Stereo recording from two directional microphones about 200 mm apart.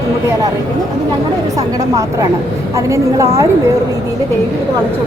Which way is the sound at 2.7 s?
15° right (ahead or behind).